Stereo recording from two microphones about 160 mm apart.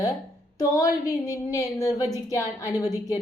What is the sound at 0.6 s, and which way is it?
A woman's voice, 20° left (ahead or behind).